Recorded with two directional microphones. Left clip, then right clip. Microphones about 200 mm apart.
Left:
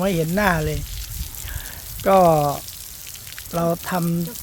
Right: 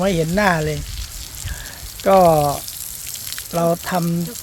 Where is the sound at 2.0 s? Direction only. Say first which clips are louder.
Right 2 dB; 20° left (ahead or behind).